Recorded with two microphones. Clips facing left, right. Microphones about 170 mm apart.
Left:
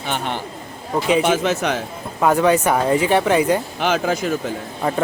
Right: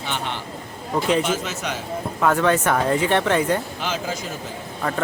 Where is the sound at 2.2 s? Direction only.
15° left (ahead or behind).